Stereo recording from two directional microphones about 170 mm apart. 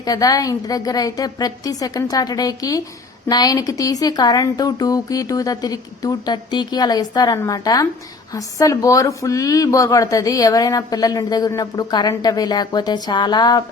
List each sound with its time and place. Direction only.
0.0 s speech: 20° left (ahead or behind)